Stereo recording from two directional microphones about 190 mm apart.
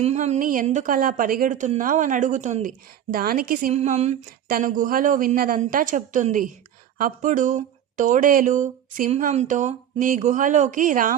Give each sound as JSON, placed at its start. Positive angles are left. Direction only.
{"t": 0.0, "sound": "speech", "side_deg": -35}
{"t": 3.7, "sound": "a sound", "side_deg": -35}
{"t": 4.5, "sound": "speech", "side_deg": -45}